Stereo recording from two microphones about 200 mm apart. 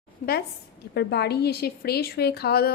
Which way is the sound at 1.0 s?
55° left (ahead or behind).